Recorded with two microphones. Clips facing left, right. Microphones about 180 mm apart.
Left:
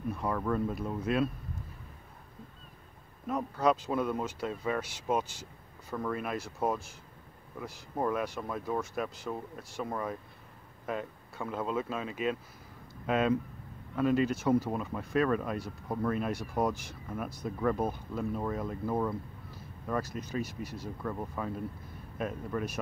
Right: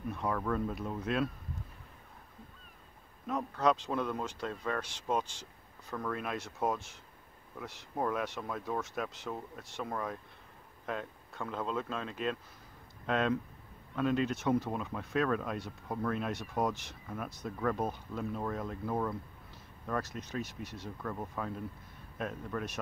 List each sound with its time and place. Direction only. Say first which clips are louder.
0.1 s speech: left 2 dB; centre (ahead or behind)
3.3 s speech: left 2 dB; 5° left (ahead or behind)